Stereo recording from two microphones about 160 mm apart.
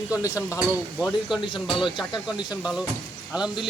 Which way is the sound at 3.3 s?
5° right (ahead or behind).